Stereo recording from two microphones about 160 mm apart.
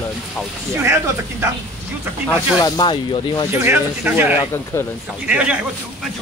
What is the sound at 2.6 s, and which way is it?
Speech, 25° left (ahead or behind).